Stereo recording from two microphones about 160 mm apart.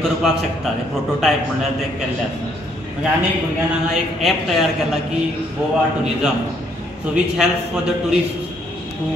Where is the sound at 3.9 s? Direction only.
Centre (ahead or behind).